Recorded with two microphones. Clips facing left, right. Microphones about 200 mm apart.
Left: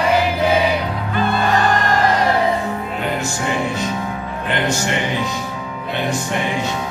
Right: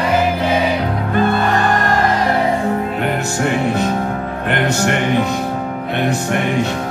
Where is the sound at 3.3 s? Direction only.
60° right (ahead or behind).